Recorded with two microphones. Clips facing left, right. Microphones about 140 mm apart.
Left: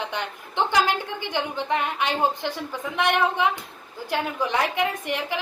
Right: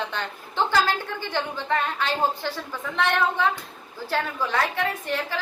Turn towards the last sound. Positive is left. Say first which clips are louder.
# left 1 dB
turn(degrees=15)  # may be behind; listen again after turning